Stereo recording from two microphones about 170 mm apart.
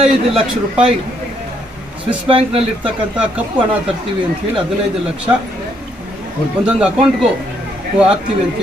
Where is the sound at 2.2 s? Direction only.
35° right (ahead or behind).